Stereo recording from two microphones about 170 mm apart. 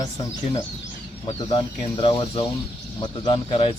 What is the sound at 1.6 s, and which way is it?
Speech, 30° left (ahead or behind).